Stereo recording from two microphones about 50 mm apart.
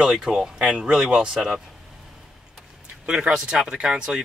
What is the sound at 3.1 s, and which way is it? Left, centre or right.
Speech, centre.